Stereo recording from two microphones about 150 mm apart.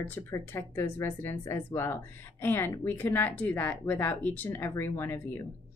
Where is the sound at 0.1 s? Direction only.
15° left (ahead or behind).